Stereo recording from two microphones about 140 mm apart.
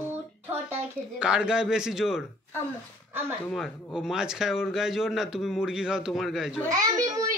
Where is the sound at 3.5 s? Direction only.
Centre (ahead or behind).